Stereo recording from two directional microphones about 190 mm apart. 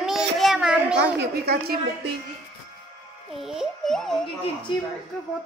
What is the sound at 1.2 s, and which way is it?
Speech, 55° right (ahead or behind).